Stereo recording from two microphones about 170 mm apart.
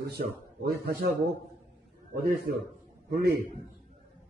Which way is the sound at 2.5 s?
70° right (ahead or behind).